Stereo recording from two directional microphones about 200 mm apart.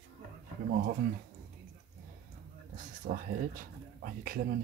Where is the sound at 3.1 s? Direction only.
40° right (ahead or behind).